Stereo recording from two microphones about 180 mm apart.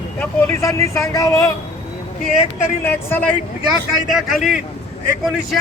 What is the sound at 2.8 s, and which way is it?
Speech, 10° left (ahead or behind).